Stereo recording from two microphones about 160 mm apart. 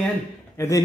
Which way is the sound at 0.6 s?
15° left (ahead or behind).